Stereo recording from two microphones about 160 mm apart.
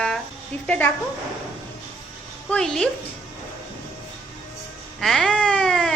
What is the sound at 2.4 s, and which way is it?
Speech, 5° left (ahead or behind).